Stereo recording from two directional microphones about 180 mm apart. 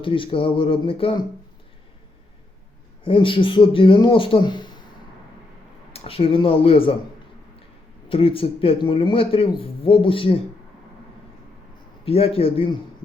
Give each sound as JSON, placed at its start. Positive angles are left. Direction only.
{"t": 0.0, "sound": "speech", "side_deg": 30}
{"t": 3.0, "sound": "speech", "side_deg": 30}
{"t": 5.9, "sound": "speech", "side_deg": 30}
{"t": 8.1, "sound": "speech", "side_deg": 30}
{"t": 12.0, "sound": "speech", "side_deg": 35}